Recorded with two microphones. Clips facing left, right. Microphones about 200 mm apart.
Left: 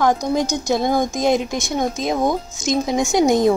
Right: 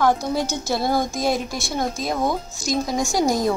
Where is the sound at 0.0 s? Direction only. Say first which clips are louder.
Left 2 dB; 15° left (ahead or behind).